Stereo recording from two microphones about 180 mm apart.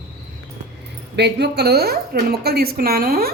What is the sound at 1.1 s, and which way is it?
Speech, 70° right (ahead or behind).